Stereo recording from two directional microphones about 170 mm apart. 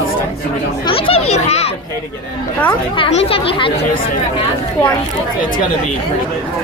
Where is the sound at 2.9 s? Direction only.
30° left (ahead or behind).